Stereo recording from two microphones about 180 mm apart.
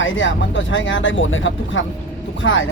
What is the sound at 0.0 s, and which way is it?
Speech, 90° left.